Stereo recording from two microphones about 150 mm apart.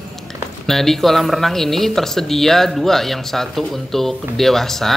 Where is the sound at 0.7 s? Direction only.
Centre (ahead or behind).